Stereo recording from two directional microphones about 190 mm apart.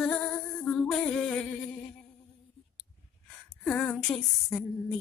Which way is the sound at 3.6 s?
5° left (ahead or behind).